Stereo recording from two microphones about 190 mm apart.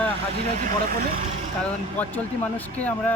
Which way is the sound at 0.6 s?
45° right (ahead or behind).